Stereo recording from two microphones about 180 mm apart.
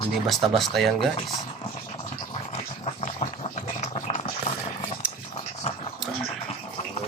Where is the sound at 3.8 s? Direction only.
40° left (ahead or behind).